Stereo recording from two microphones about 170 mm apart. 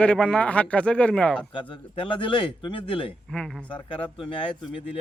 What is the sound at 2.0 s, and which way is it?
Speech, 30° left (ahead or behind).